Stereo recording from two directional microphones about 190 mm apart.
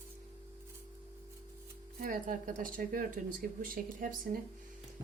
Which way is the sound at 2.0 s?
45° right (ahead or behind).